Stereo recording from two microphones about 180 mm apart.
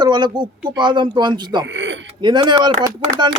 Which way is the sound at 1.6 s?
90° right.